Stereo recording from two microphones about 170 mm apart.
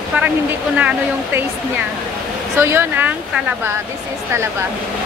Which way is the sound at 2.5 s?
15° right (ahead or behind).